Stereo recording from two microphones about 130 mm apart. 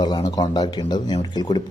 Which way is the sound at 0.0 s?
35° left (ahead or behind).